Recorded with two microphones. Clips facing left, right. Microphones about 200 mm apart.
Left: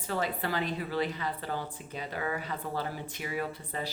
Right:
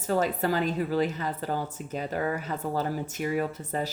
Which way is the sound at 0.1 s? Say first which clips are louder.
Right 6 dB; 40° right (ahead or behind).